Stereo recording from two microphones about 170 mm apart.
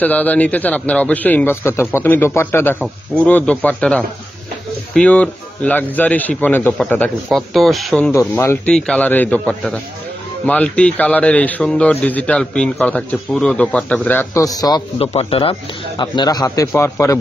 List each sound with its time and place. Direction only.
0.0 s a man's voice: 10° left (ahead or behind)
8.1 s a man's voice: 15° left (ahead or behind)
8.7 s a man's voice: 5° left (ahead or behind); by 14.8 s 20° left (ahead or behind)
15.0 s a man's voice: 35° left (ahead or behind); by 17.2 s 15° left (ahead or behind)